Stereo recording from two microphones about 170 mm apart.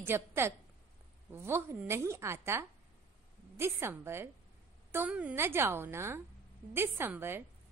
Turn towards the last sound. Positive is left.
turn(degrees=-10)  # may be behind; listen again after turning